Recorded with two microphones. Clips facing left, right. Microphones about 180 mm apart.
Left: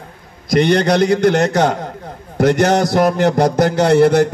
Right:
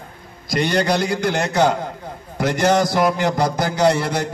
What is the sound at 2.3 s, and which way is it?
Speech, 55° left (ahead or behind).